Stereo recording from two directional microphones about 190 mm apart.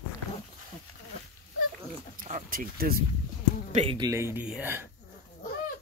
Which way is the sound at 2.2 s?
45° right (ahead or behind).